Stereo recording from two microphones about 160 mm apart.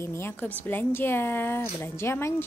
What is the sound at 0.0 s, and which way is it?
A woman's voice, 15° left (ahead or behind).